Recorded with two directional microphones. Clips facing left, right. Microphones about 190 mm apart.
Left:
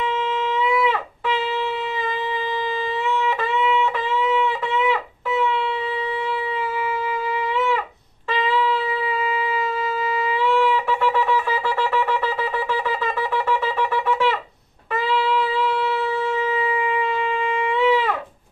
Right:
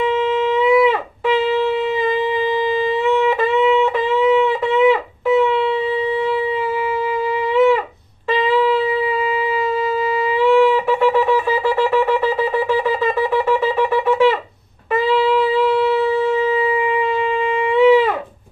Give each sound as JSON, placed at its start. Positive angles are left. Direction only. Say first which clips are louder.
{"t": 3.1, "sound": "music", "louder": "right 7 dB", "side_deg": -20}
{"t": 10.4, "sound": "shofar", "louder": "right 7 dB", "side_deg": -15}
{"t": 13.0, "sound": "wind instrument", "louder": "right 6 dB", "side_deg": -15}
{"t": 17.7, "sound": "a sound", "louder": "right 8 dB", "side_deg": -15}